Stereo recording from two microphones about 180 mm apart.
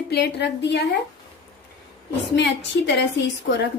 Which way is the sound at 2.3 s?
75° left (ahead or behind).